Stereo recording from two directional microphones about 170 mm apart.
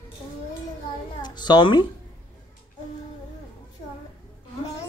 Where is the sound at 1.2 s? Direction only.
25° left (ahead or behind).